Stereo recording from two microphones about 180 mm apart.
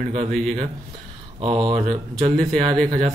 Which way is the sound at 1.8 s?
40° right (ahead or behind).